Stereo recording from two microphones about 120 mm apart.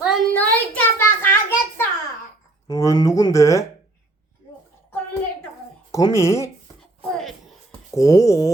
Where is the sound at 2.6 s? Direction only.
30° left (ahead or behind).